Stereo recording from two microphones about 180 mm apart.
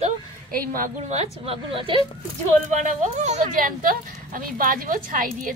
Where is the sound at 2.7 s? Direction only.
45° right (ahead or behind).